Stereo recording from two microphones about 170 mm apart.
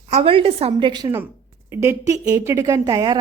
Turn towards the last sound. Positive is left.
turn(degrees=-25)  # may be behind; listen again after turning